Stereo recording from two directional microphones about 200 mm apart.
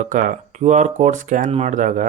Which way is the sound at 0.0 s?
40° right (ahead or behind).